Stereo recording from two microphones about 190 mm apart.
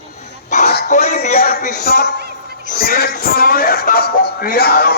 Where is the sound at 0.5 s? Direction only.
40° left (ahead or behind).